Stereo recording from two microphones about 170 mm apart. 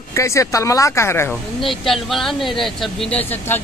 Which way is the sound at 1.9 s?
Centre (ahead or behind).